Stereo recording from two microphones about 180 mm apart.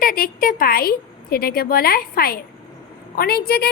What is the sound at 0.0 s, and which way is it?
A woman's voice, 55° left (ahead or behind).